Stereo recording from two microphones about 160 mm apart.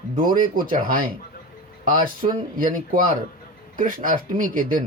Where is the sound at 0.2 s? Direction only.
60° right (ahead or behind).